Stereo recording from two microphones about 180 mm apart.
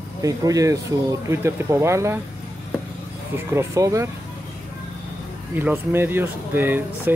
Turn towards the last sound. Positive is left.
turn(degrees=-10)  # may be behind; listen again after turning